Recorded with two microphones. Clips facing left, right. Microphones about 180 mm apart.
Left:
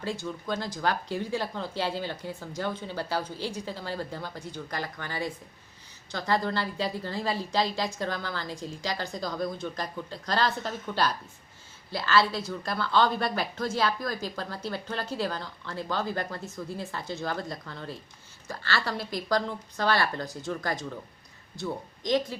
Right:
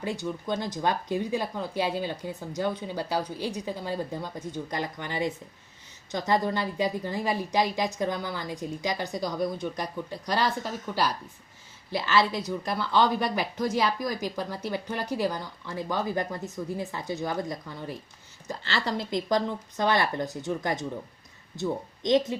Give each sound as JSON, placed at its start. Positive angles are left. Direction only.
{"t": 0.0, "sound": "a woman's voice", "side_deg": -15}